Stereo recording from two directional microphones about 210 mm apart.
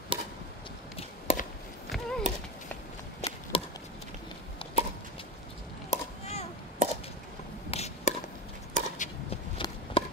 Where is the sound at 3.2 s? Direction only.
30° left (ahead or behind).